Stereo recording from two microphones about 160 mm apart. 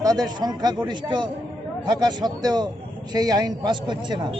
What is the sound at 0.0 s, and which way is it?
Speech, 25° right (ahead or behind).